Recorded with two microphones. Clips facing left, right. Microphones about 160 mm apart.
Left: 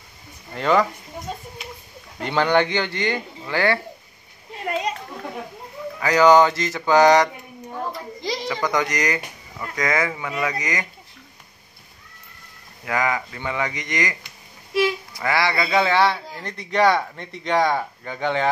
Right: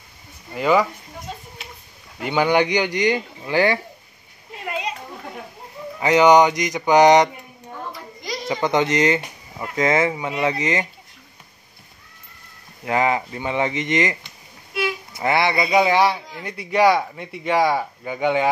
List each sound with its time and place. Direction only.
0.6 s speech: 5° right (ahead or behind)
2.1 s a man's voice: 10° right (ahead or behind)
5.9 s speech: 20° right (ahead or behind)
8.5 s speech: 25° right (ahead or behind)
12.8 s speech: 25° right (ahead or behind)
15.1 s a man's voice: 25° right (ahead or behind)